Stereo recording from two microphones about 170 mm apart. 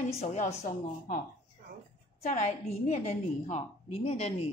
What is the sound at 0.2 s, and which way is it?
Speech, 40° left (ahead or behind).